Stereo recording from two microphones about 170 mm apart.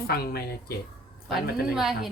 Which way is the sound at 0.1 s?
65° left (ahead or behind).